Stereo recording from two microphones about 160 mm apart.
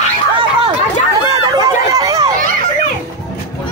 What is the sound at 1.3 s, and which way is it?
Chatter, 25° right (ahead or behind).